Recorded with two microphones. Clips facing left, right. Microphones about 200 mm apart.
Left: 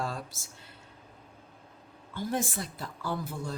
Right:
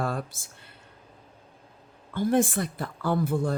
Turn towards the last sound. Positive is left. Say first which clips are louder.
# right 9 dB
turn(degrees=-55)  # may be behind; listen again after turning